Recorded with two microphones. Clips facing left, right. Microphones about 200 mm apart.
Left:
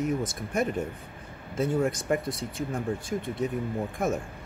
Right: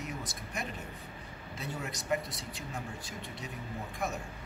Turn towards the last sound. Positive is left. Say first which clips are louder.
# left 9 dB
turn(degrees=50)  # may be behind; listen again after turning